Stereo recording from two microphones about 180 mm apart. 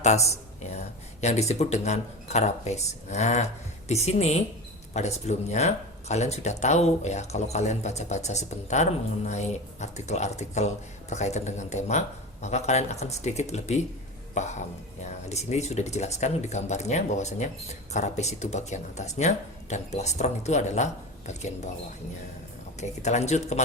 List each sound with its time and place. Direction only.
0.3 s speech: 35° left (ahead or behind)
22.8 s speech: 40° left (ahead or behind)